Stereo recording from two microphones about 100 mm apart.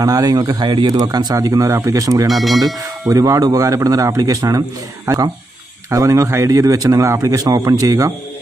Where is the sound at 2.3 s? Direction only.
Centre (ahead or behind).